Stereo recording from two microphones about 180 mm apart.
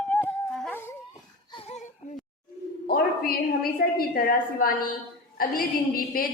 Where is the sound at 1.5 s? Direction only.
30° left (ahead or behind).